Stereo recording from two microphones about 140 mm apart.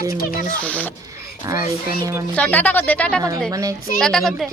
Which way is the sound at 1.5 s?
25° right (ahead or behind).